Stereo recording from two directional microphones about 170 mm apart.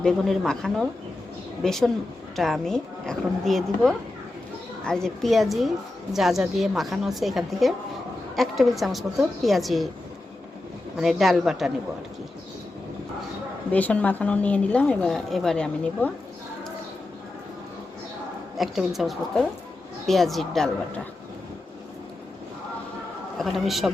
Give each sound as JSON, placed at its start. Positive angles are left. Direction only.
{"t": 0.0, "sound": "a woman's voice", "side_deg": 5}
{"t": 10.9, "sound": "a woman's voice", "side_deg": 0}
{"t": 13.7, "sound": "speech", "side_deg": 10}
{"t": 18.5, "sound": "a woman's voice", "side_deg": 0}
{"t": 23.4, "sound": "a woman's voice", "side_deg": 0}